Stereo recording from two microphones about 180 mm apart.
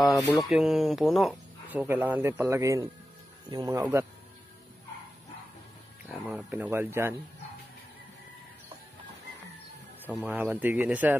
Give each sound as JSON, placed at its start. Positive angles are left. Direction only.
{"t": 0.4, "sound": "speech", "side_deg": 0}
{"t": 6.1, "sound": "speech", "side_deg": -10}
{"t": 10.0, "sound": "speech", "side_deg": -10}